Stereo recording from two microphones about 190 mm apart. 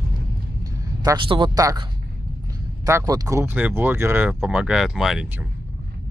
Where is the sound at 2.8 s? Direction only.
15° right (ahead or behind).